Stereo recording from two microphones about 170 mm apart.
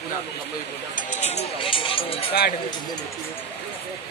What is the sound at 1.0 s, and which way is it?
Speech, 45° left (ahead or behind).